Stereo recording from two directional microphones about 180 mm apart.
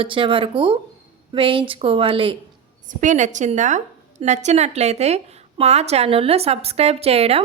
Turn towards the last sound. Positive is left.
turn(degrees=-35)  # may be behind; listen again after turning